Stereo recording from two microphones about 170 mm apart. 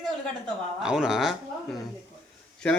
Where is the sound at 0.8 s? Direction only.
5° right (ahead or behind).